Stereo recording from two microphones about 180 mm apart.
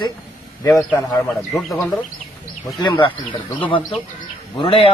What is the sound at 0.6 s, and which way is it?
Speech, 5° left (ahead or behind).